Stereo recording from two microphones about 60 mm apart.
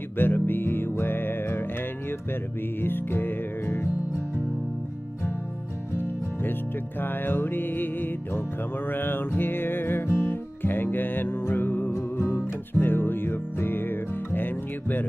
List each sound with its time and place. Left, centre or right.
0.2 s music: left
5.9 s music: left